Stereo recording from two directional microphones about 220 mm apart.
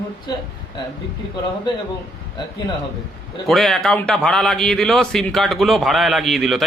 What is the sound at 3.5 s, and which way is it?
A man's voice, centre (ahead or behind).